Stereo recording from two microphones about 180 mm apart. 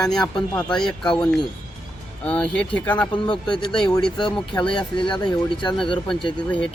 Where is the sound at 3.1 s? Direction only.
25° left (ahead or behind).